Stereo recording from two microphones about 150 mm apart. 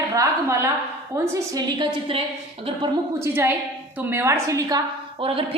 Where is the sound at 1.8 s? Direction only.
40° right (ahead or behind).